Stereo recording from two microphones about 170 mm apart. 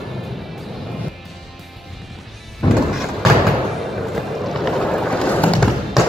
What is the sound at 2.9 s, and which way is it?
Thump, centre (ahead or behind).